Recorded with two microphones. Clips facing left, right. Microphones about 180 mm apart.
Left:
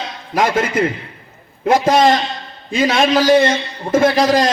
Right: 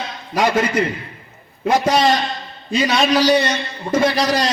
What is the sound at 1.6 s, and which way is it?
A man's voice, 50° left (ahead or behind).